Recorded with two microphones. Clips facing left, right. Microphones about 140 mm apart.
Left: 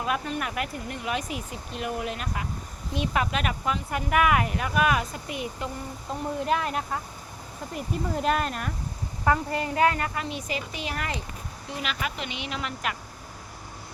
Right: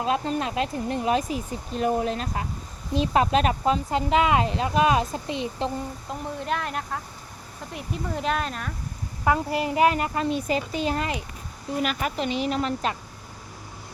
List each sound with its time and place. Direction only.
0.0 s speech: 25° right (ahead or behind)
6.4 s speech: centre (ahead or behind)
9.2 s speech: 15° right (ahead or behind)
10.2 s speech: 35° right (ahead or behind)